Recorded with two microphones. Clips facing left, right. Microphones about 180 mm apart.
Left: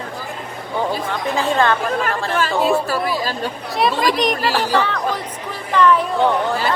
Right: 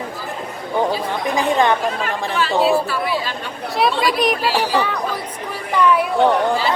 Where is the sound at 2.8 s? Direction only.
40° left (ahead or behind).